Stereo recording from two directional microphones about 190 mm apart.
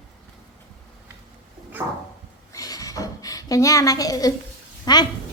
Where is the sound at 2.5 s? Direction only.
20° left (ahead or behind).